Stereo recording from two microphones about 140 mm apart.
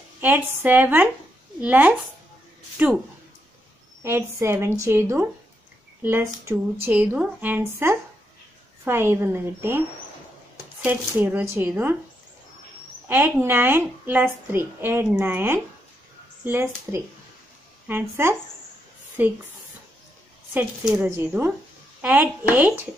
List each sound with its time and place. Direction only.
0.2 s a woman's voice: 15° right (ahead or behind)
4.0 s a woman's voice: 20° right (ahead or behind)
10.8 s a woman's voice: 15° right (ahead or behind)
13.1 s a woman's voice: 15° right (ahead or behind)
20.8 s a woman's voice: 10° right (ahead or behind)